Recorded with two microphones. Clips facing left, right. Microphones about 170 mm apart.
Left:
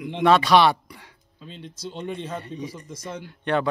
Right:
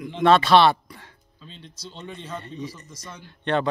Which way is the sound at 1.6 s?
50° left (ahead or behind).